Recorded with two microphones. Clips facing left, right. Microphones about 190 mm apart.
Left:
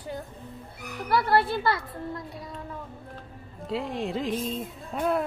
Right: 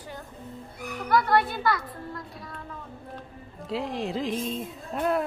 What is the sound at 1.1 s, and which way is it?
Speech, 30° left (ahead or behind).